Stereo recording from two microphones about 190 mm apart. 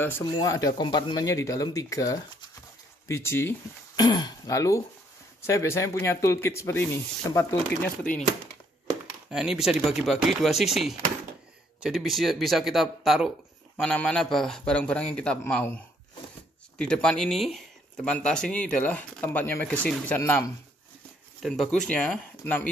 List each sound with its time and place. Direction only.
0.4 s speech: 20° left (ahead or behind)
9.3 s speech: 5° right (ahead or behind); by 20.5 s 15° left (ahead or behind)
21.4 s speech: centre (ahead or behind)